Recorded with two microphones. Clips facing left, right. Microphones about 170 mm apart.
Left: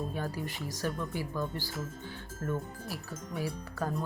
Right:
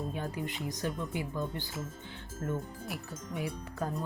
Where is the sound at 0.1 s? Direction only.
20° right (ahead or behind).